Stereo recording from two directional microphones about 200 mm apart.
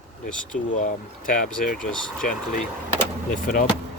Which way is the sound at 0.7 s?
40° left (ahead or behind).